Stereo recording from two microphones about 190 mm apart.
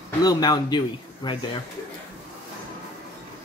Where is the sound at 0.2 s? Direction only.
20° left (ahead or behind).